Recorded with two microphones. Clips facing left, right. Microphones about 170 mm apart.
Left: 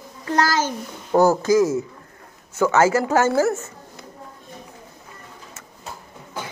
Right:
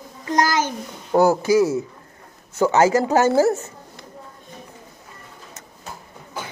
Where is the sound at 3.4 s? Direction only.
35° right (ahead or behind).